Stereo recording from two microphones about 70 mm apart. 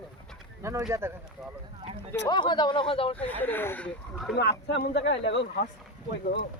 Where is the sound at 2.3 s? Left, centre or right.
Left.